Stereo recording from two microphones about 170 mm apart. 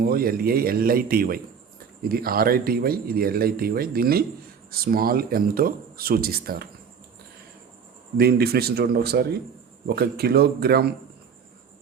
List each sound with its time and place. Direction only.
0.0 s speech: 60° right (ahead or behind)
8.2 s a man's voice: 65° right (ahead or behind)